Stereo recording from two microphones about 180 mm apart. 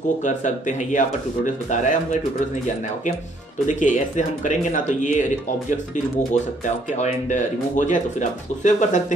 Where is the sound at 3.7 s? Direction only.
45° left (ahead or behind).